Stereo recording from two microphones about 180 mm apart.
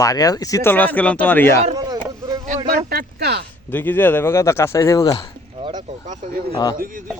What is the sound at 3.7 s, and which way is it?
Speech, 10° left (ahead or behind).